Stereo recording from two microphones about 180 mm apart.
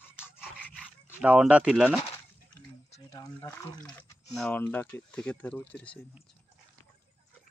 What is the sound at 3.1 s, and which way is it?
Speech, 20° left (ahead or behind).